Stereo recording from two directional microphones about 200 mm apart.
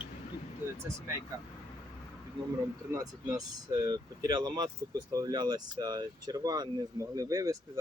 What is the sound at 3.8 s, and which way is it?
Speech, 20° right (ahead or behind).